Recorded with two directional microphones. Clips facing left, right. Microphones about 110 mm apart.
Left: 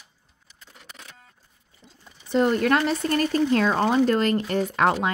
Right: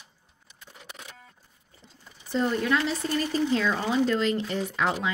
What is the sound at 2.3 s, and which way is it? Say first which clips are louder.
Speech: left 5 dB; 60° left (ahead or behind).